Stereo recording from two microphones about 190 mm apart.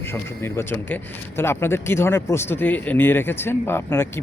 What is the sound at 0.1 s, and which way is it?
Speech, 10° left (ahead or behind).